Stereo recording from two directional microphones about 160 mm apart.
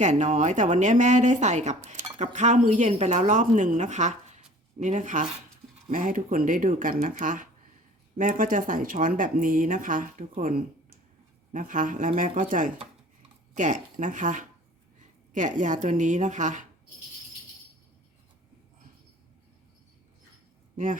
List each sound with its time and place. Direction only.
0.0 s speech: 50° right (ahead or behind)